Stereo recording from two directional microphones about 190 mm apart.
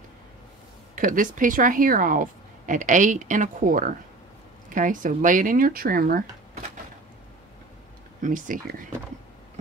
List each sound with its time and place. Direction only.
0.9 s speech: 45° right (ahead or behind)
8.2 s speech: 45° right (ahead or behind)